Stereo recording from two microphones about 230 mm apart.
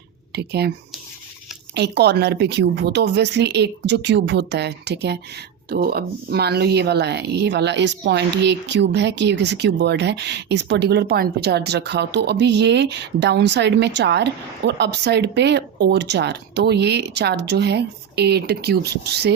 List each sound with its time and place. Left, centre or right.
0.3 s speech: right
1.7 s speech: right